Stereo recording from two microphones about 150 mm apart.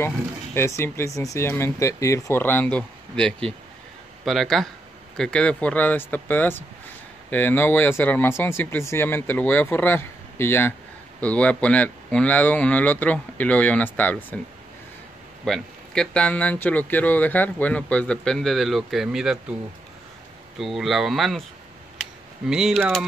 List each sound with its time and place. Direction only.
0.6 s speech: 15° left (ahead or behind)
15.4 s speech: 5° left (ahead or behind)
20.5 s speech: centre (ahead or behind)
22.5 s speech: 5° right (ahead or behind)